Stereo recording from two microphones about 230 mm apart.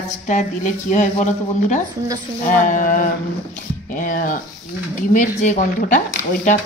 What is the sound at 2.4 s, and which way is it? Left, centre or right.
Speech, left.